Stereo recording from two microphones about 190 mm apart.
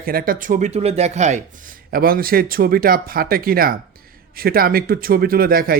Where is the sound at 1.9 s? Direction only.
50° right (ahead or behind).